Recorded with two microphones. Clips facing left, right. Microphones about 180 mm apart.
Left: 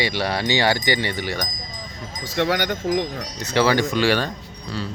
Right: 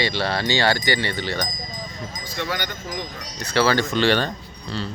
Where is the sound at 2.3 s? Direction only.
80° left.